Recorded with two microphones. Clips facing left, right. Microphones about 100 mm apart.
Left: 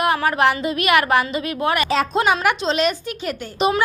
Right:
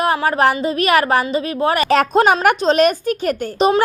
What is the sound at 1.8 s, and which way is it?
A woman's voice, 55° right (ahead or behind).